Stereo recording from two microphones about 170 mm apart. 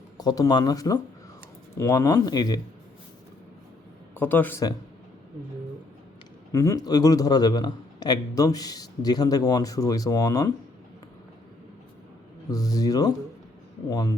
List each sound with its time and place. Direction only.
0.2 s a man's voice: 25° left (ahead or behind)
4.1 s speech: 10° left (ahead or behind)
6.5 s a man's voice: 15° left (ahead or behind)
12.5 s a man's voice: 20° left (ahead or behind)